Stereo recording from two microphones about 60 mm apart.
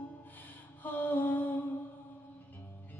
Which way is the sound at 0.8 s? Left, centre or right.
Left.